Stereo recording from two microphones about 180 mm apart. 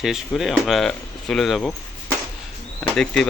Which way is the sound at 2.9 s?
5° left (ahead or behind).